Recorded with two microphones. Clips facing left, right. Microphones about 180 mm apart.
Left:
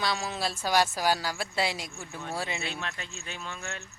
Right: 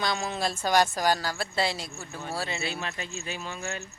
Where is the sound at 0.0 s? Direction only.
5° left (ahead or behind).